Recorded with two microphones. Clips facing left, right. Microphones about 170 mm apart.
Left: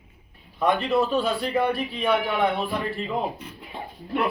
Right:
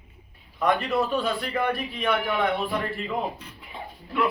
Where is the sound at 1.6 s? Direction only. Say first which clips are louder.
Left 3 dB; 30° left (ahead or behind).